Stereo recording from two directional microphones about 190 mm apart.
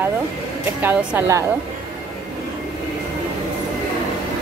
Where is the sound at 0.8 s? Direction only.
10° right (ahead or behind).